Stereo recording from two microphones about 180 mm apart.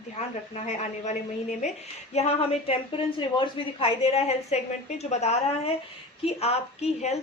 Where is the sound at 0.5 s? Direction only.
40° left (ahead or behind).